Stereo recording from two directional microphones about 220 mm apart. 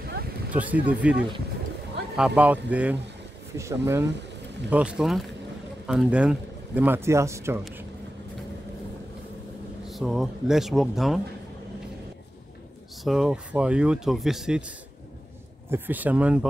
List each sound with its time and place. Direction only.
0.0 s a sound: 45° right (ahead or behind)
0.5 s speech: 5° right (ahead or behind)
9.8 s speech: centre (ahead or behind)
13.0 s speech: centre (ahead or behind)
15.7 s speech: 10° right (ahead or behind)